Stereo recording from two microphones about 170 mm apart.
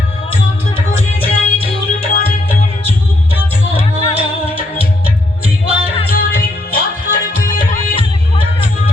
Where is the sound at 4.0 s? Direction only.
35° left (ahead or behind).